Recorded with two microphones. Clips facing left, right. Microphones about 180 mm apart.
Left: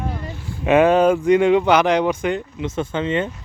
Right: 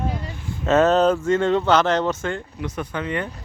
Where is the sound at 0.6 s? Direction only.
10° left (ahead or behind).